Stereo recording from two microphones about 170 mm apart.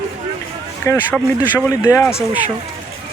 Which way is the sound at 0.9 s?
15° left (ahead or behind).